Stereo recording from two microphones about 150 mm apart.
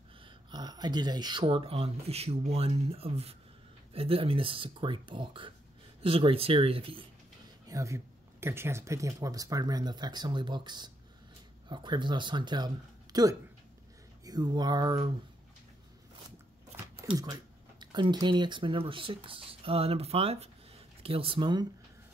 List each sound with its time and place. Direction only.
0.2 s speech: 30° right (ahead or behind)
1.4 s speech: 40° right (ahead or behind)
7.6 s speech: 20° right (ahead or behind)
17.0 s speech: 25° right (ahead or behind)